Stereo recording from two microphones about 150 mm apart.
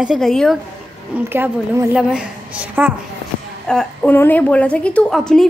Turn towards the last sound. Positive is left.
turn(degrees=5)  # may be behind; listen again after turning